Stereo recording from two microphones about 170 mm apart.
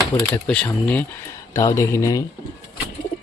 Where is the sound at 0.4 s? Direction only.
5° left (ahead or behind).